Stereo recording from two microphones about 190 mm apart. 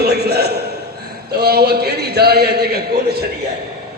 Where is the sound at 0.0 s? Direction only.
60° right (ahead or behind).